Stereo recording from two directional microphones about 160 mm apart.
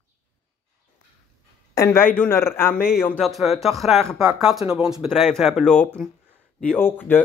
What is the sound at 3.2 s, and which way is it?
Speech, centre (ahead or behind).